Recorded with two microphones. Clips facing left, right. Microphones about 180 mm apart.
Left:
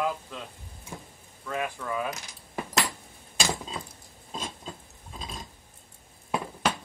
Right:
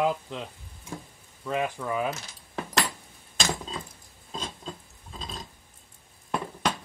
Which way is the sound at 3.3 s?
10° left (ahead or behind).